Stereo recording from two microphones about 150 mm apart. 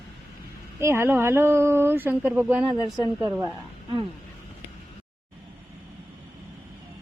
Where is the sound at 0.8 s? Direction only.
15° right (ahead or behind).